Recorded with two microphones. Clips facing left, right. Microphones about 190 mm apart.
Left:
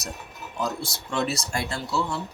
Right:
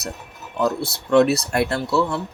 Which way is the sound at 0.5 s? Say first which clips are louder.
Right 8 dB; 65° right (ahead or behind).